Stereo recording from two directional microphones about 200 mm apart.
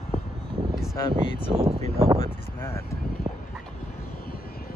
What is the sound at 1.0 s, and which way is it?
Speech, 15° left (ahead or behind).